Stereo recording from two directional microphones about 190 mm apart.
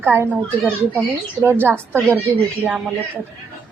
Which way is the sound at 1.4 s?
10° right (ahead or behind).